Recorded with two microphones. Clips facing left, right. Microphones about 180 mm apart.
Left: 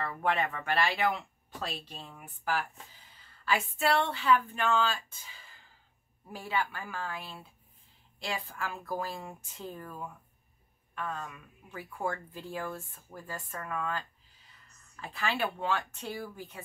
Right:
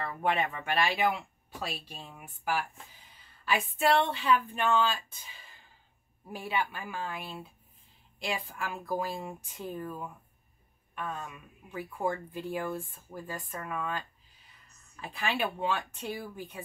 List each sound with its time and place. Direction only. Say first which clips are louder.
0.0 s speech: right 1 dB; 15° right (ahead or behind)